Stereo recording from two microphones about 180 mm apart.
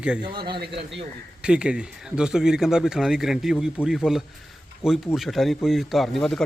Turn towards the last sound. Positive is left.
turn(degrees=0)  # may be behind; listen again after turning